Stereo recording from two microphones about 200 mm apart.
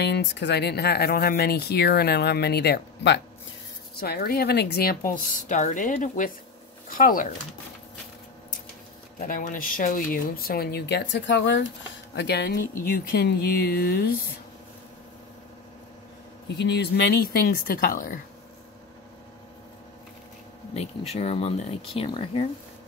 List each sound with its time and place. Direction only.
0.0 s speech: 60° left (ahead or behind); by 7.3 s 45° left (ahead or behind)
9.2 s speech: 45° left (ahead or behind)
16.6 s speech: 60° left (ahead or behind)
20.7 s speech: 30° left (ahead or behind)